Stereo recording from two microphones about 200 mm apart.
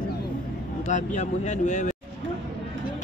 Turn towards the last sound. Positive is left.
turn(degrees=35)  # may be behind; listen again after turning